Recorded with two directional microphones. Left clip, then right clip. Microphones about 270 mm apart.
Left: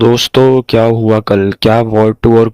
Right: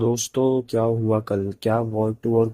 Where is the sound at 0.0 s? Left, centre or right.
Left.